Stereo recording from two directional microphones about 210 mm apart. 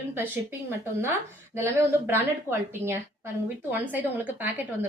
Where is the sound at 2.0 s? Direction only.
10° right (ahead or behind).